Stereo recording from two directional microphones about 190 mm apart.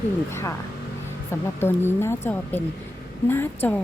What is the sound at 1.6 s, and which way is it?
A woman's voice, 10° left (ahead or behind).